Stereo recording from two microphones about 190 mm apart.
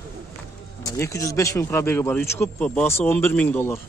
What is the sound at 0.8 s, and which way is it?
Speech, 15° left (ahead or behind).